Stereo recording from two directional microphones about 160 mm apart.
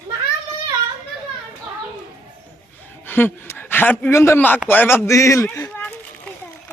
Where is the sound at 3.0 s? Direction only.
10° left (ahead or behind).